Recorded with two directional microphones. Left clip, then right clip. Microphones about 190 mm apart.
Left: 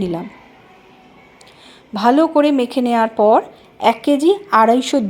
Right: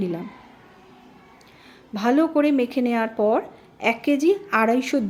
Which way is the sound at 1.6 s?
10° left (ahead or behind).